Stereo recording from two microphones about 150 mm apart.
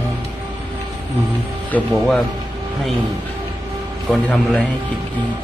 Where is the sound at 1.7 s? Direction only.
Centre (ahead or behind).